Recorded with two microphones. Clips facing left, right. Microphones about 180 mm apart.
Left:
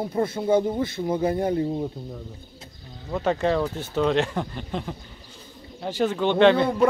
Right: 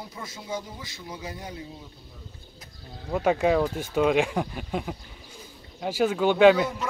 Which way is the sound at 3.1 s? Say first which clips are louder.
Right 1 dB; 10° right (ahead or behind).